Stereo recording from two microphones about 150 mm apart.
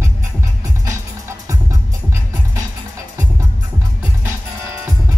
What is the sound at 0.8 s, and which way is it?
Music, 20° right (ahead or behind).